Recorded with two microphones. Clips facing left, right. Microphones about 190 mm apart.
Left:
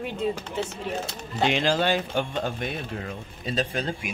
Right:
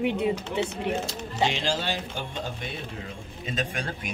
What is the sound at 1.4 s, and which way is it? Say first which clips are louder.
Speech: left 6 dB; 55° left (ahead or behind).